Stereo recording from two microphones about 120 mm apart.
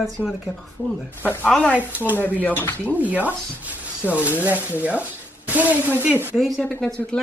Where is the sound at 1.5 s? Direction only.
5° left (ahead or behind).